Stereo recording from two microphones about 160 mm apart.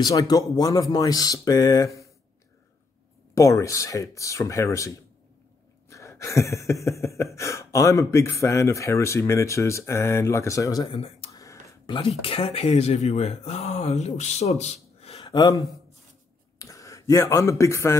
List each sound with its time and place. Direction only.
0.0 s speech: 25° left (ahead or behind)
3.3 s speech: 20° left (ahead or behind)
5.9 s a sound: 20° left (ahead or behind)
7.3 s speech: 20° left (ahead or behind)
11.0 s a sound: 35° left (ahead or behind)
12.2 s speech: 35° left (ahead or behind)
15.3 s speech: 25° left (ahead or behind)